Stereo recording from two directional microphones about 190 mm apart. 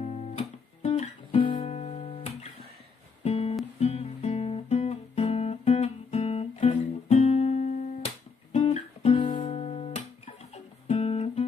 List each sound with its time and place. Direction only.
0.0 s guitar: 35° left (ahead or behind)
1.8 s music: 35° left (ahead or behind)
3.8 s guitar: 35° left (ahead or behind)